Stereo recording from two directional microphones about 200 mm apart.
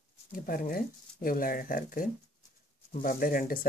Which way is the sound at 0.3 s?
45° left (ahead or behind).